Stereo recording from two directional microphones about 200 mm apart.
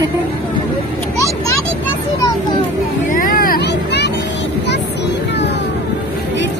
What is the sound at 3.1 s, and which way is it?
Vehicle, 45° left (ahead or behind).